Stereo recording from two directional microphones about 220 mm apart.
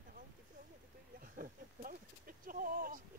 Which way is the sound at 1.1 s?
40° right (ahead or behind).